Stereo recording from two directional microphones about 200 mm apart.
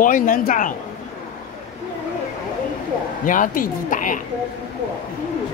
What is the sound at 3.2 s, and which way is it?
Speech, 40° left (ahead or behind).